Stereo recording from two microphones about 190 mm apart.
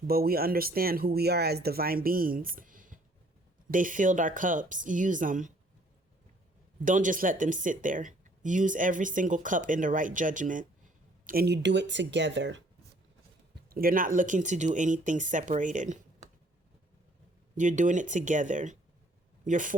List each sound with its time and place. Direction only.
0.1 s speech: 50° right (ahead or behind)
6.8 s speech: 45° right (ahead or behind)
11.3 s speech: 55° right (ahead or behind); by 12.6 s 75° right (ahead or behind)
13.7 s speech: 50° right (ahead or behind)
17.6 s speech: 40° right (ahead or behind)